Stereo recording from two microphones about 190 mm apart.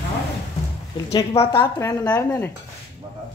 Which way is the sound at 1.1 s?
20° left (ahead or behind).